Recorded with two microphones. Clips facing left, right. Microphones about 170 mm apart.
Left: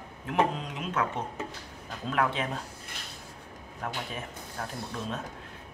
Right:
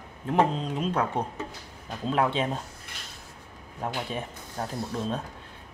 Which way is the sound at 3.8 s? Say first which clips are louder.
Right 4 dB; 30° right (ahead or behind).